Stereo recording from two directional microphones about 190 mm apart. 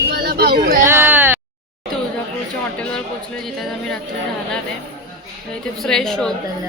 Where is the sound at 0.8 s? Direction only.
15° right (ahead or behind).